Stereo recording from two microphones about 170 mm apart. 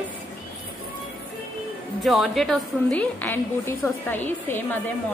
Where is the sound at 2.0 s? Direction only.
Centre (ahead or behind).